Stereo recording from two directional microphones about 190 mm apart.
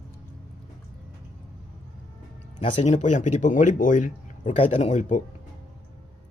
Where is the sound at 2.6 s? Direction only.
30° left (ahead or behind).